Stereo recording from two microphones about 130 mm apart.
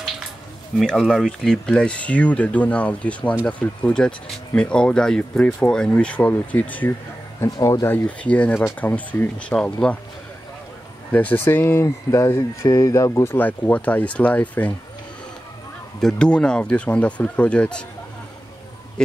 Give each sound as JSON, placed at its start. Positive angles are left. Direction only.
{"t": 0.7, "sound": "speech", "side_deg": 0}
{"t": 7.3, "sound": "speech", "side_deg": 25}
{"t": 11.1, "sound": "speech", "side_deg": 10}
{"t": 16.0, "sound": "speech", "side_deg": 5}
{"t": 19.0, "sound": "speech", "side_deg": 5}